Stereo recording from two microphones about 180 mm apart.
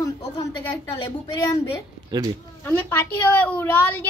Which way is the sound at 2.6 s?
10° left (ahead or behind).